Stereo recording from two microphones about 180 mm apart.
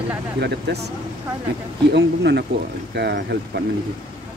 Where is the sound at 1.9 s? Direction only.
70° right (ahead or behind).